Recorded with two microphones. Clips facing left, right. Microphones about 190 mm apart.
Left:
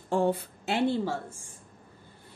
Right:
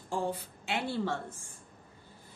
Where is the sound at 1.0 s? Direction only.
10° left (ahead or behind).